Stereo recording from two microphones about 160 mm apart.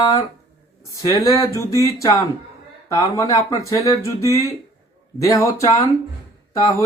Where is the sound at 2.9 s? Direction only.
20° left (ahead or behind).